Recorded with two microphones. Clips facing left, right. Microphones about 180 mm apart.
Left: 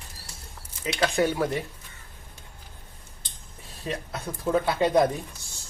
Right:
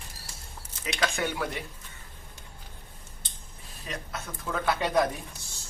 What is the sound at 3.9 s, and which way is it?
Speech, 30° left (ahead or behind).